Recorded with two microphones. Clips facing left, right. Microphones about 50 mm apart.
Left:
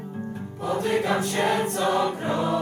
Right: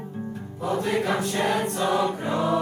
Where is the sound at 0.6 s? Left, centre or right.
Left.